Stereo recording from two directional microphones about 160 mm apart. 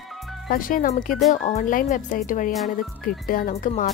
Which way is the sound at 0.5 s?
60° left (ahead or behind).